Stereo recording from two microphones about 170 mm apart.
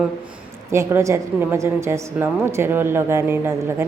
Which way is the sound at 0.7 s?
15° right (ahead or behind).